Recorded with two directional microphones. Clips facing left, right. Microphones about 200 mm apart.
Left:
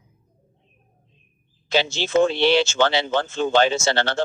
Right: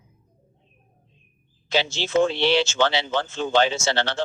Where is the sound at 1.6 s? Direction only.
50° left (ahead or behind).